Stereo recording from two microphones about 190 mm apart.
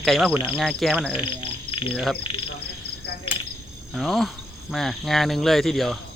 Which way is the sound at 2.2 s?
30° left (ahead or behind).